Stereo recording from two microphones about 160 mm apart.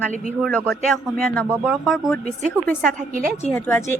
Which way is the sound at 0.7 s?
Centre (ahead or behind).